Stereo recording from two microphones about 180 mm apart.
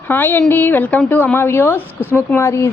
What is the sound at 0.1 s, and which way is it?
A woman's voice, 10° left (ahead or behind).